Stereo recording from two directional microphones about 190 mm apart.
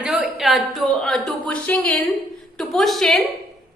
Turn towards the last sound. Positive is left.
turn(degrees=0)  # may be behind; listen again after turning